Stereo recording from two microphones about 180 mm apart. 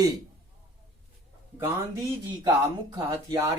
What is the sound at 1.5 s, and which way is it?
Speech, 15° right (ahead or behind).